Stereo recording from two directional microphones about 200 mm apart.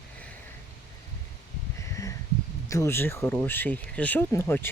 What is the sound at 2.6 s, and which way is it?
Speech, 15° left (ahead or behind).